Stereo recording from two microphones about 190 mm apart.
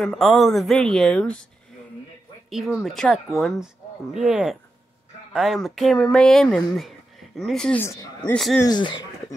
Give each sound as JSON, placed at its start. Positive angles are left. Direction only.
{"t": 0.0, "sound": "speech", "side_deg": 0}
{"t": 2.5, "sound": "speech", "side_deg": 0}
{"t": 8.4, "sound": "speech", "side_deg": 0}
{"t": 8.6, "sound": "speech", "side_deg": 25}